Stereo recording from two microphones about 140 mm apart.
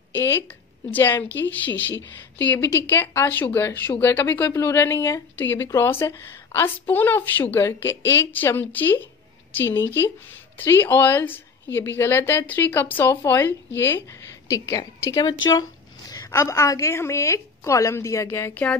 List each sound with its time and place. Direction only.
0.9 s a woman's voice: 15° left (ahead or behind)